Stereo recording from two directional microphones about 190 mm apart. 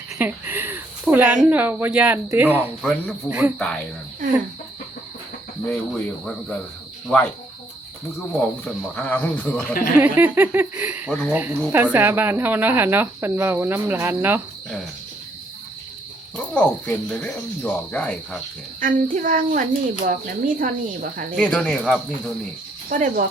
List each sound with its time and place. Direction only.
0.2 s speech: 10° right (ahead or behind)
5.6 s speech: 5° left (ahead or behind)
8.3 s speech: 5° left (ahead or behind)
10.0 s speech: 10° right (ahead or behind)
11.1 s speech: 5° left (ahead or behind)
11.3 s speech: 10° right (ahead or behind)
16.4 s speech: 5° left (ahead or behind)
18.8 s speech: 45° right (ahead or behind)
21.3 s speech: 5° left (ahead or behind)
22.9 s speech: 45° right (ahead or behind)